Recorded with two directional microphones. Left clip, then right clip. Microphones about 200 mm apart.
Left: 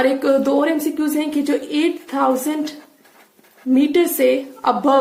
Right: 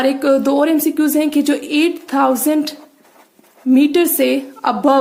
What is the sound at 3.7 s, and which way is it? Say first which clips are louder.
A woman's voice: right 2 dB; 40° right (ahead or behind).